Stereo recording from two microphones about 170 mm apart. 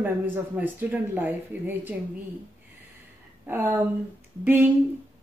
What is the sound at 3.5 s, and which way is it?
Speech, 10° right (ahead or behind).